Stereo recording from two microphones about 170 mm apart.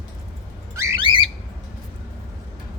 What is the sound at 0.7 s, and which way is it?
Squawk, 15° right (ahead or behind).